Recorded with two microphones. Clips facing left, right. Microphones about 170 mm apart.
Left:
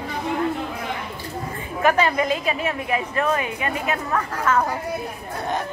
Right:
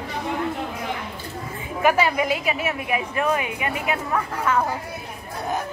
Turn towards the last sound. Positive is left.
turn(degrees=-10)  # may be behind; listen again after turning